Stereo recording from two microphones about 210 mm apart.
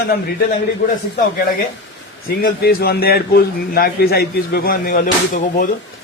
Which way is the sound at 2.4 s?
45° left (ahead or behind).